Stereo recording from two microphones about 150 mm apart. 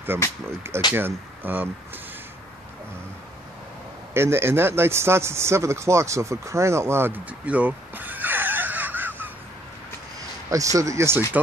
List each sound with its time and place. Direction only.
0.1 s speech: 15° right (ahead or behind)
4.1 s a man's voice: 15° right (ahead or behind)
10.5 s speech: 20° right (ahead or behind)